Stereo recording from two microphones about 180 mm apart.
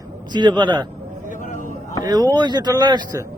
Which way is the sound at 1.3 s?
45° left (ahead or behind).